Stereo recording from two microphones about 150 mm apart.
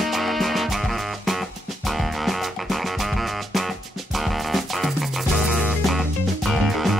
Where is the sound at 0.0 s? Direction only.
Centre (ahead or behind).